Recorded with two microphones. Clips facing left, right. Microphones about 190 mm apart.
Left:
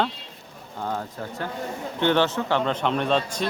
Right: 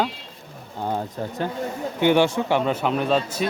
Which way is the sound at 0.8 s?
20° right (ahead or behind).